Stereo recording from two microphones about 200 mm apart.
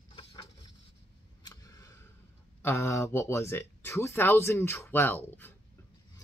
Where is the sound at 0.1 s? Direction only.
30° left (ahead or behind).